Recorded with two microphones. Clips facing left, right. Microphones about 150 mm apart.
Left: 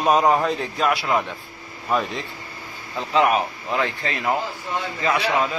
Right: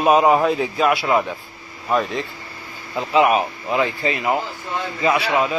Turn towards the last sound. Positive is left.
turn(degrees=-10)  # may be behind; listen again after turning